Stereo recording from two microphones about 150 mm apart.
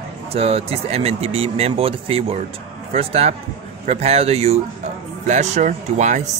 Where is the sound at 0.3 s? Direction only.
40° right (ahead or behind).